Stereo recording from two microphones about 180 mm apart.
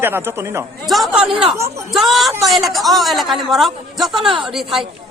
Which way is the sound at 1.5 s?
15° right (ahead or behind).